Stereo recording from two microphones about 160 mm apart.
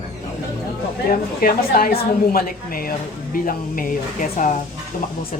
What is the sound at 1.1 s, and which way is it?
A woman's voice, 65° left (ahead or behind).